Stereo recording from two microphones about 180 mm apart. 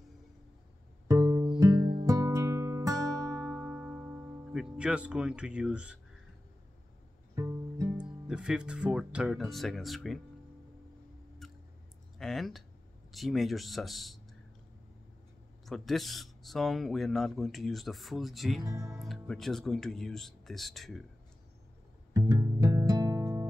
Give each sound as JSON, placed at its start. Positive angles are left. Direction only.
{"t": 1.0, "sound": "music", "side_deg": -15}
{"t": 7.3, "sound": "music", "side_deg": -15}
{"t": 8.0, "sound": "speech", "side_deg": -5}
{"t": 11.4, "sound": "a sound", "side_deg": 0}
{"t": 12.2, "sound": "speech", "side_deg": 0}
{"t": 15.6, "sound": "speech", "side_deg": 0}
{"t": 18.6, "sound": "music", "side_deg": -20}
{"t": 19.0, "sound": "speech", "side_deg": 0}
{"t": 22.1, "sound": "music", "side_deg": -20}